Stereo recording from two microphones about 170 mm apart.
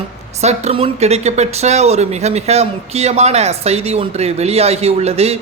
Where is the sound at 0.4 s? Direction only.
35° right (ahead or behind).